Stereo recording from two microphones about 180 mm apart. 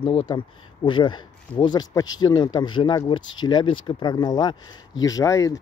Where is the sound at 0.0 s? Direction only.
35° left (ahead or behind).